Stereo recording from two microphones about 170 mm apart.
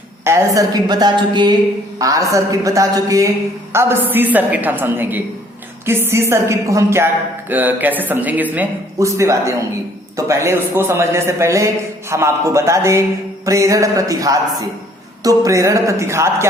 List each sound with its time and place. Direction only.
0.3 s a woman's voice: 15° right (ahead or behind)